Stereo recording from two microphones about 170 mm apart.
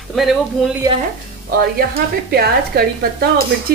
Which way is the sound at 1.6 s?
65° right (ahead or behind).